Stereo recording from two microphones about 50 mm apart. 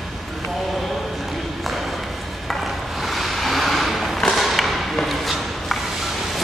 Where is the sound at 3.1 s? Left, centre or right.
Centre.